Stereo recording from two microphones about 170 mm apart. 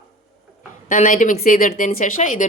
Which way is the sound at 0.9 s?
50° left (ahead or behind).